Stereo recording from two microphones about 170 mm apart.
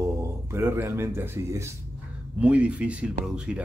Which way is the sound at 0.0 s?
15° right (ahead or behind).